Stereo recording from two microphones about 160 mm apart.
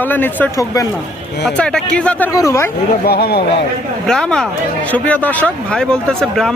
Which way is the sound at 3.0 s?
80° left.